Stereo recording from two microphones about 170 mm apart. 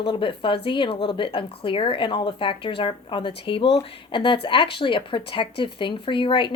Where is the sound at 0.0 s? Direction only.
30° left (ahead or behind).